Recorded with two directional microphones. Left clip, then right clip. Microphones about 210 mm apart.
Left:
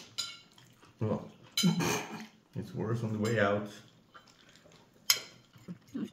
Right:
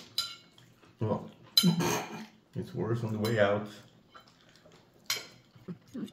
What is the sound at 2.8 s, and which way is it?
Speech, 5° left (ahead or behind).